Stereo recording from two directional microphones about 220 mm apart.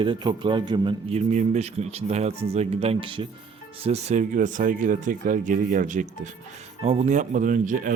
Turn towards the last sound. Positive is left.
turn(degrees=-35)  # may be behind; listen again after turning